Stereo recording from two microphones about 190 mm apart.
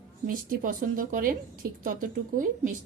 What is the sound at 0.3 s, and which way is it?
A woman's voice, 45° right (ahead or behind).